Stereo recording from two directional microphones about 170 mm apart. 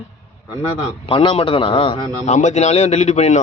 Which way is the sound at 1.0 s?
30° left (ahead or behind).